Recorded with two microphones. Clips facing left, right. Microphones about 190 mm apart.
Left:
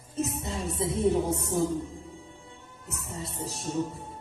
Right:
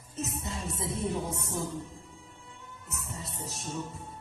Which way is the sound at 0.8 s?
30° left (ahead or behind).